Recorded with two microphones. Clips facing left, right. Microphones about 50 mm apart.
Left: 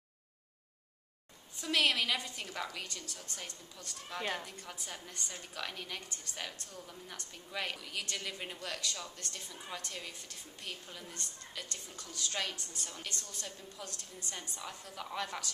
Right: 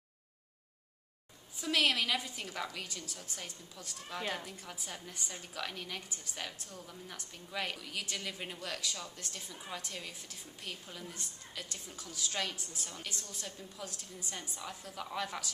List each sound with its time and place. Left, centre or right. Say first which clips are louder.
1.6 s a woman's voice: even; centre